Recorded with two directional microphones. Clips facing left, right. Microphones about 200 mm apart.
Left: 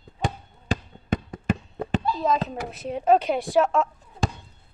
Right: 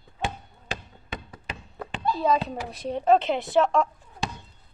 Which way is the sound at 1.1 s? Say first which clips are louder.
Left 12 dB; 45° left (ahead or behind).